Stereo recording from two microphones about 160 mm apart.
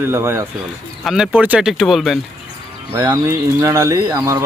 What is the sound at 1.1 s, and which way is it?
Speech, centre (ahead or behind).